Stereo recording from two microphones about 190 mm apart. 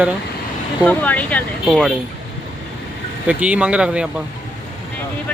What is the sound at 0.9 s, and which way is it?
Speech, 10° left (ahead or behind).